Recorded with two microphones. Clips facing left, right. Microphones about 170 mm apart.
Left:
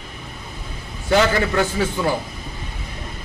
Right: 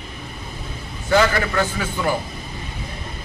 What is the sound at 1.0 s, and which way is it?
A man's voice, 20° left (ahead or behind).